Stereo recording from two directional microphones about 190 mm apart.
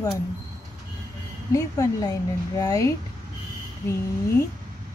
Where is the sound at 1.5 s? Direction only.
20° left (ahead or behind).